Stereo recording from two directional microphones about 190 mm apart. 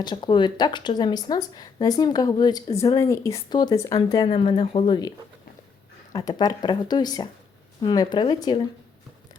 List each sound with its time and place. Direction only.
0.0 s speech: 25° left (ahead or behind)
6.1 s speech: 20° left (ahead or behind)